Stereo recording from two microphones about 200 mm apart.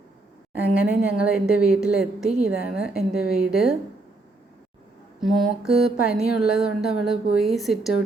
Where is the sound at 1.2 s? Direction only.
5° right (ahead or behind).